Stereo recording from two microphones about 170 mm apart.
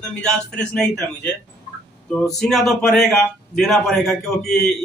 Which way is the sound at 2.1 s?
5° left (ahead or behind).